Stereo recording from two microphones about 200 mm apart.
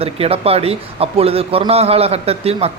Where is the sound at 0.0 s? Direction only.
30° right (ahead or behind).